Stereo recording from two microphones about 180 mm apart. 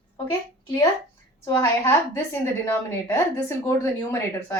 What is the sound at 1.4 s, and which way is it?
Speech, 15° left (ahead or behind).